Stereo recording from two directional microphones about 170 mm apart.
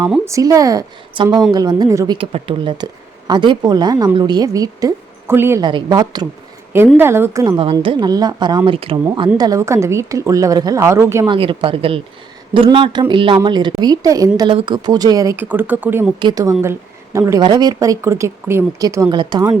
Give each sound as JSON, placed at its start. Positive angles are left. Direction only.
{"t": 0.3, "sound": "a woman's voice", "side_deg": -20}
{"t": 2.1, "sound": "a woman's voice", "side_deg": -30}
{"t": 5.6, "sound": "a woman's voice", "side_deg": -25}
{"t": 6.9, "sound": "a woman's voice", "side_deg": -15}
{"t": 11.3, "sound": "a woman's voice", "side_deg": -30}